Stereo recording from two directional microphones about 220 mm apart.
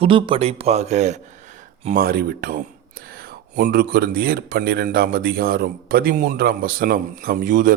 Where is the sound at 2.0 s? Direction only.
45° right (ahead or behind).